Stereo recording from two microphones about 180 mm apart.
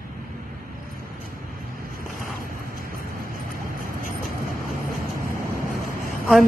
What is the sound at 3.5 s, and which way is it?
Vehicle, 50° right (ahead or behind).